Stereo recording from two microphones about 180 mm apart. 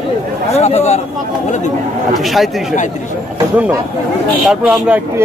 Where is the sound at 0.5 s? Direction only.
40° left (ahead or behind).